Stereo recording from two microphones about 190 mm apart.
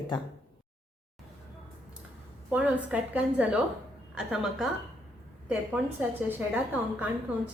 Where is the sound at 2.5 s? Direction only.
5° right (ahead or behind).